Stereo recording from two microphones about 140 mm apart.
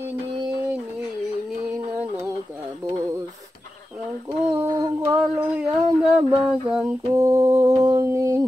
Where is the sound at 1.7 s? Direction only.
15° right (ahead or behind).